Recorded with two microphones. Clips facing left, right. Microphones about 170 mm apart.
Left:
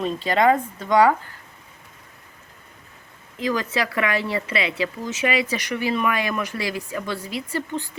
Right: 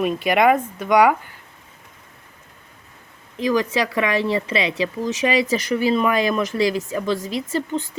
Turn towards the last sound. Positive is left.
turn(degrees=-20)  # may be behind; listen again after turning